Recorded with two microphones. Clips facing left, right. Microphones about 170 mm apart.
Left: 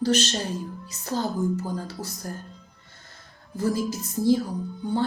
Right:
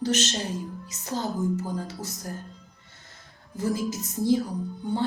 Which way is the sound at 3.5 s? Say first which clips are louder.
Left 2 dB; 20° right (ahead or behind).